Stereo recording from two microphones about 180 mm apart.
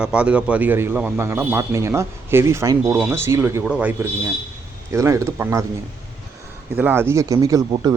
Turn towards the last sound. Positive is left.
turn(degrees=-20)  # may be behind; listen again after turning